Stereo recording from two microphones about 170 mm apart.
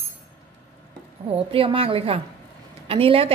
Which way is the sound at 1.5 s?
30° right (ahead or behind).